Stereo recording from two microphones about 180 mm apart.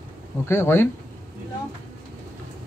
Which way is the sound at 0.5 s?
15° left (ahead or behind).